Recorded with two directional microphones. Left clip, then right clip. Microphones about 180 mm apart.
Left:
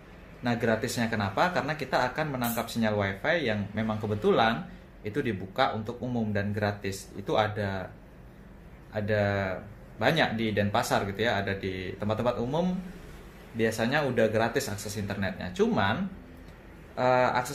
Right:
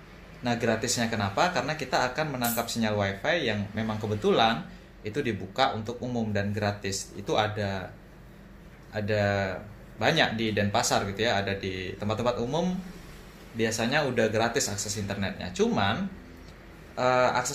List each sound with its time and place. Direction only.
0.4 s speech: centre (ahead or behind)
8.9 s speech: centre (ahead or behind)